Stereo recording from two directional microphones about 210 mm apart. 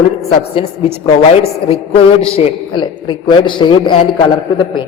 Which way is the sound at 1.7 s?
25° left (ahead or behind).